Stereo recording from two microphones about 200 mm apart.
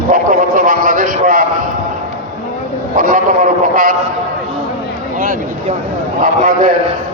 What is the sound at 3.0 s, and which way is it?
A man's voice, 40° right (ahead or behind).